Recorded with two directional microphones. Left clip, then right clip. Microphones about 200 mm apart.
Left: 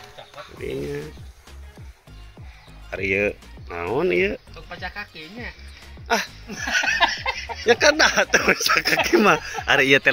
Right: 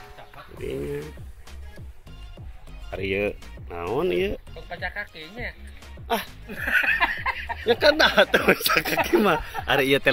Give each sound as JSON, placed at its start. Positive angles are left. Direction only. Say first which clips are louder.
{"t": 0.6, "sound": "speech", "louder": "left 1 dB", "side_deg": -5}
{"t": 2.9, "sound": "speech", "louder": "left 4 dB", "side_deg": -5}
{"t": 6.0, "sound": "speech", "louder": "left 4 dB", "side_deg": 0}
{"t": 6.6, "sound": "laughter", "louder": "left 1 dB", "side_deg": 50}
{"t": 7.6, "sound": "speech", "louder": "left 2 dB", "side_deg": 5}